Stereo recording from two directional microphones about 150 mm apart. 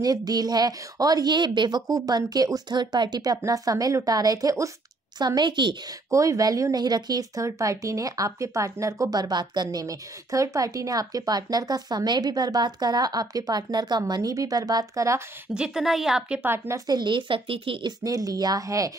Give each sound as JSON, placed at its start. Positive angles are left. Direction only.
{"t": 0.0, "sound": "a woman's voice", "side_deg": -25}
{"t": 15.5, "sound": "a woman's voice", "side_deg": -5}
{"t": 18.0, "sound": "speech", "side_deg": -25}